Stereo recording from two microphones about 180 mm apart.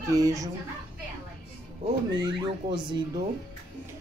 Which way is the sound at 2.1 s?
25° right (ahead or behind).